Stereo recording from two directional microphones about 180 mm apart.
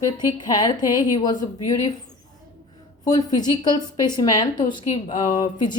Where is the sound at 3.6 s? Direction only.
25° left (ahead or behind).